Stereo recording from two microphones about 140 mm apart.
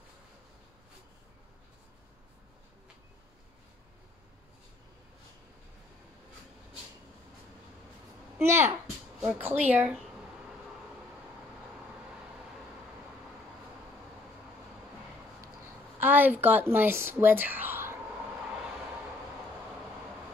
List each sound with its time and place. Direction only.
8.4 s a woman's voice: 20° right (ahead or behind)
16.0 s speech: 15° right (ahead or behind)